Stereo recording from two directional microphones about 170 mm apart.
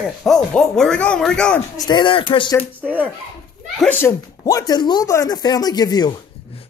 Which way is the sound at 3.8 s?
10° left (ahead or behind).